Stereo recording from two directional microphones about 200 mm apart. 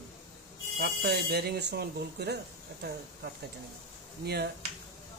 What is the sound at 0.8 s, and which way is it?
Speech, 55° right (ahead or behind).